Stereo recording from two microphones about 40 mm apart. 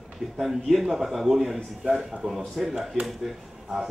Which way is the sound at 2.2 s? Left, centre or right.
Centre.